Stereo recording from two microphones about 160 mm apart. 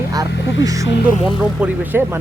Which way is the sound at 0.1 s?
20° right (ahead or behind).